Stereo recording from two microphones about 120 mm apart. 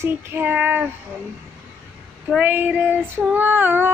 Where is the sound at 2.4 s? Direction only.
15° right (ahead or behind).